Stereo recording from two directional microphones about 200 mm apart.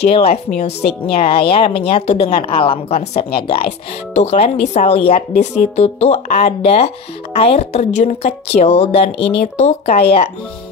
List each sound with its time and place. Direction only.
0.0 s a woman's voice: 30° left (ahead or behind)